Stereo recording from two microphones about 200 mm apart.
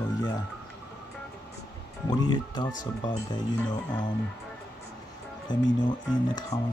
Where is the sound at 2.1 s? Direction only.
20° left (ahead or behind).